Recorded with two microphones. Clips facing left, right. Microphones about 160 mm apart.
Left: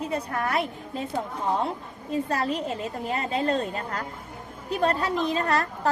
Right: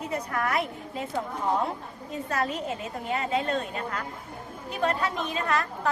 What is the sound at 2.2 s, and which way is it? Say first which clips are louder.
A woman's voice: right 3 dB; 30° left (ahead or behind).